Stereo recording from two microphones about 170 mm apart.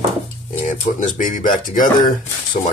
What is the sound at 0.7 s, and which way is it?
Speech, 45° left (ahead or behind).